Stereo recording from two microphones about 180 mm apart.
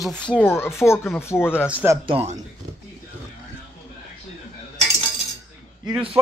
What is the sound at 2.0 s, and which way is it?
Speech, 35° right (ahead or behind).